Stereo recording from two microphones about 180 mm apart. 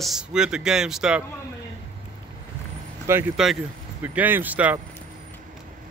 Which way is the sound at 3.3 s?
Centre (ahead or behind).